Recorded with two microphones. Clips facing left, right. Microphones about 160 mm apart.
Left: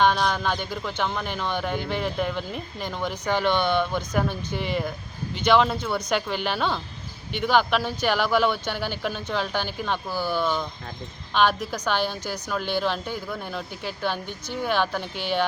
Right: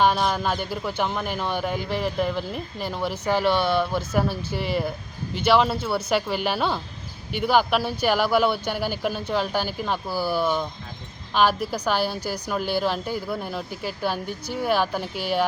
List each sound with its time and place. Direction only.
0.0 s a woman's voice: 5° right (ahead or behind)